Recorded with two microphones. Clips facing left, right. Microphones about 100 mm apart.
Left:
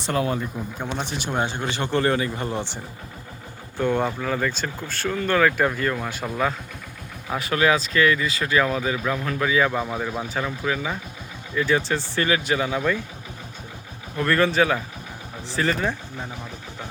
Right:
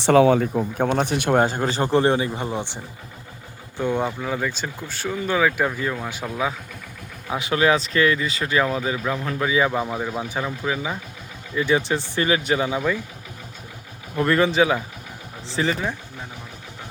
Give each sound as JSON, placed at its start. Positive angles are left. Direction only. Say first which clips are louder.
{"t": 0.0, "sound": "speech", "louder": "right 9 dB", "side_deg": -90}
{"t": 0.8, "sound": "speech", "louder": "right 7 dB", "side_deg": -50}
{"t": 7.3, "sound": "speech", "louder": "right 1 dB", "side_deg": -20}
{"t": 14.2, "sound": "speech", "louder": "right 2 dB", "side_deg": -20}
{"t": 15.7, "sound": "speech", "louder": "left 1 dB", "side_deg": -10}